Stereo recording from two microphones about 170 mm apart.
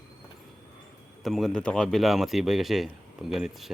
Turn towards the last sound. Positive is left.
turn(degrees=0)  # may be behind; listen again after turning